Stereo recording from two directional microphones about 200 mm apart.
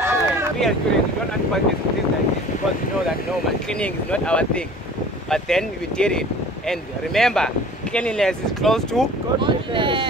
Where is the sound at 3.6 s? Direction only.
5° left (ahead or behind).